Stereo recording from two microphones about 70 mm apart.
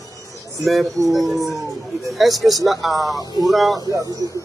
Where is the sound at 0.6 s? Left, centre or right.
Centre.